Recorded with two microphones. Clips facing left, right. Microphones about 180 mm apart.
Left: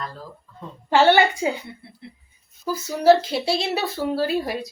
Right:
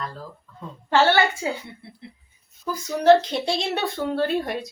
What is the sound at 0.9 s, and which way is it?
Speech, 15° left (ahead or behind).